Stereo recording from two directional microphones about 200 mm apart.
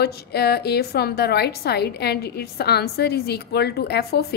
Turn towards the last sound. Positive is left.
turn(degrees=55)  # may be behind; listen again after turning